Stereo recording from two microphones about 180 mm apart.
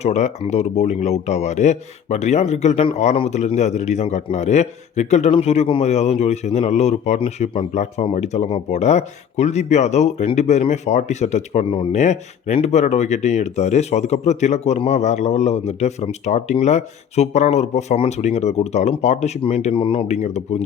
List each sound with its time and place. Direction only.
0.0 s speech: 40° left (ahead or behind)